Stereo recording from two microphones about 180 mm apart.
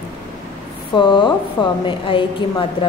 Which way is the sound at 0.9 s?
25° left (ahead or behind).